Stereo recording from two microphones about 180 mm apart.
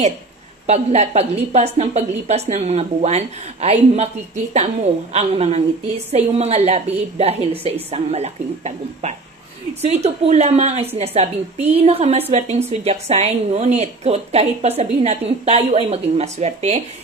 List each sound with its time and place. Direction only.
0.7 s a woman's voice: 35° right (ahead or behind)
5.1 s a woman's voice: 35° right (ahead or behind)